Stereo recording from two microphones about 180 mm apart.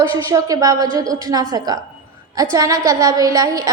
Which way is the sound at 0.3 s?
20° right (ahead or behind).